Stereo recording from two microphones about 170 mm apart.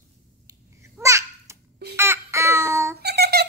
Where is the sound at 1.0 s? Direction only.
15° right (ahead or behind).